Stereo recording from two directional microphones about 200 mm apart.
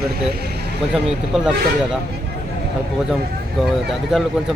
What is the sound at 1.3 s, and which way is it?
Speech, centre (ahead or behind).